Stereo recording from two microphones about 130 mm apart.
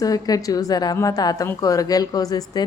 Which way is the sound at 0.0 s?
30° left (ahead or behind).